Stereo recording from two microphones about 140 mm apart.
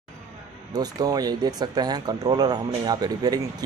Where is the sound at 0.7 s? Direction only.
30° right (ahead or behind).